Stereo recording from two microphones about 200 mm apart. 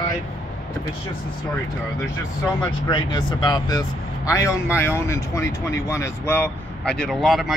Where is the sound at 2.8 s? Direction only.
20° left (ahead or behind).